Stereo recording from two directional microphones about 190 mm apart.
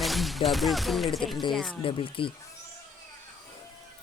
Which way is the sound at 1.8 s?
30° left (ahead or behind).